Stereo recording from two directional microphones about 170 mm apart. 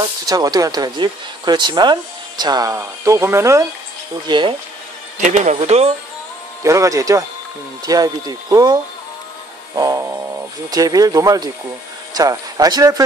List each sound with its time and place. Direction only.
0.3 s speech: 20° right (ahead or behind)
4.3 s speech: 30° right (ahead or behind)
5.2 s speech: 45° right (ahead or behind)
6.6 s speech: 20° right (ahead or behind)
9.8 s speech: 20° right (ahead or behind)